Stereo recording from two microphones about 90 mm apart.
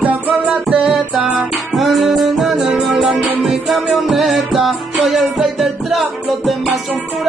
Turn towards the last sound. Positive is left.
turn(degrees=0)  # may be behind; listen again after turning